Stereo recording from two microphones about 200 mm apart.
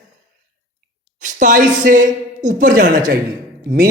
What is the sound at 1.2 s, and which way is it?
Speech, 40° right (ahead or behind).